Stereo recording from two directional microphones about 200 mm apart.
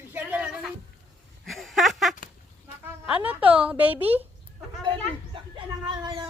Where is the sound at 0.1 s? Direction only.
5° right (ahead or behind).